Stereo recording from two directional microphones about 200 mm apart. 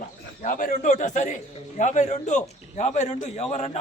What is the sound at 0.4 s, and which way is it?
A man's voice, 40° left (ahead or behind).